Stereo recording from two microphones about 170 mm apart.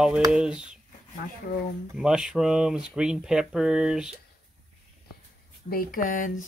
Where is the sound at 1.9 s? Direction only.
5° right (ahead or behind).